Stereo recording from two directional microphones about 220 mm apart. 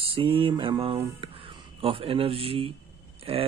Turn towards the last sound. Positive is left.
turn(degrees=-25)  # may be behind; listen again after turning